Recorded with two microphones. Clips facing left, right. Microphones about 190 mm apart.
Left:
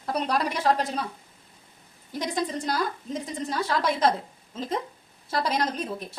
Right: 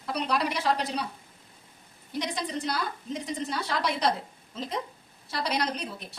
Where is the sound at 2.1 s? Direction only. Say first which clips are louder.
Left 3 dB; 45° left (ahead or behind).